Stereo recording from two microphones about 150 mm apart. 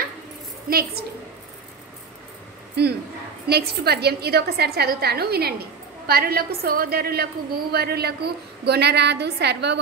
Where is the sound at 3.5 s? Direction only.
90° right.